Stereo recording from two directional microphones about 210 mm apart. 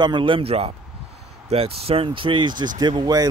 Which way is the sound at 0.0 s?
20° right (ahead or behind).